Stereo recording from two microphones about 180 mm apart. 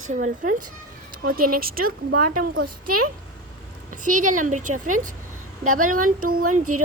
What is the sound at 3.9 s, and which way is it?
Speech, 45° right (ahead or behind).